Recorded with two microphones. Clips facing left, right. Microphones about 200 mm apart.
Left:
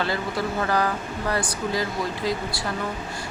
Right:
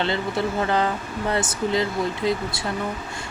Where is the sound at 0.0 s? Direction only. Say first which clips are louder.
Right 2 dB; 25° right (ahead or behind).